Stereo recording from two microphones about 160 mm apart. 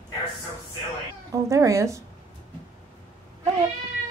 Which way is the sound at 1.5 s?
20° right (ahead or behind).